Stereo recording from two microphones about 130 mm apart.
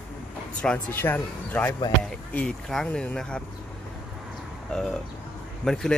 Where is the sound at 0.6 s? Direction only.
10° left (ahead or behind).